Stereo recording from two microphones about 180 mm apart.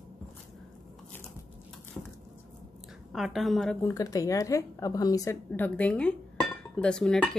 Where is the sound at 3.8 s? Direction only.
15° left (ahead or behind).